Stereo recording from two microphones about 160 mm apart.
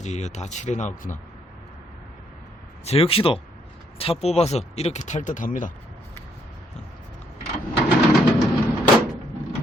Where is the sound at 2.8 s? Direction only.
35° left (ahead or behind); by 5.7 s 55° left (ahead or behind).